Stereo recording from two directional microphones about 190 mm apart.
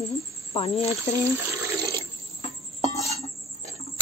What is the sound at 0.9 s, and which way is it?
Speech, 15° right (ahead or behind).